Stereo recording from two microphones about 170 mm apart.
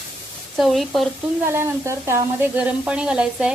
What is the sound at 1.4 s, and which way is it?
Speech, 15° right (ahead or behind).